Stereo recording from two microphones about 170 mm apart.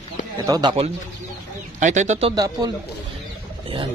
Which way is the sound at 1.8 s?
45° right (ahead or behind).